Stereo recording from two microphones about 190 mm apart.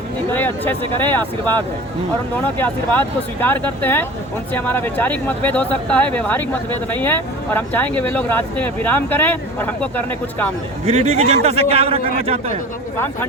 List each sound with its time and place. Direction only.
0.3 s speech: 10° left (ahead or behind)
3.4 s speech: 10° left (ahead or behind)
10.8 s a man's voice: 35° right (ahead or behind)